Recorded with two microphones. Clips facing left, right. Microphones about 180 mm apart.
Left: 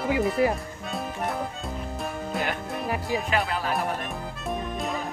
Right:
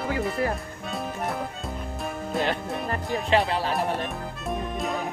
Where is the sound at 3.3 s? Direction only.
30° right (ahead or behind).